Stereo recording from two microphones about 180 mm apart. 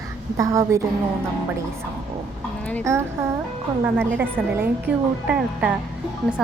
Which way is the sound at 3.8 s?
10° right (ahead or behind).